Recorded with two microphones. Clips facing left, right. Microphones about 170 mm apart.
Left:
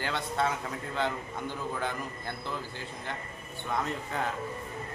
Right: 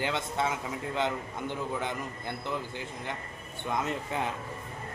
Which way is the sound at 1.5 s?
20° right (ahead or behind).